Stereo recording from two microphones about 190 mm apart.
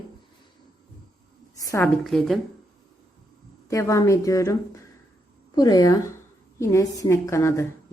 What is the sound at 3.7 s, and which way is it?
A woman's voice, 15° left (ahead or behind).